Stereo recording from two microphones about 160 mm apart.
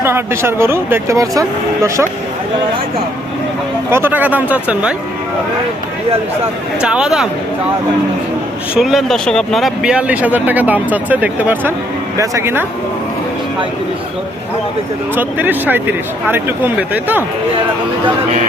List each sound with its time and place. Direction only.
0.0 s speech: 15° right (ahead or behind)
3.9 s speech: 10° right (ahead or behind)
6.8 s speech: 5° right (ahead or behind)
8.7 s speech: 5° right (ahead or behind)
15.1 s speech: 10° right (ahead or behind)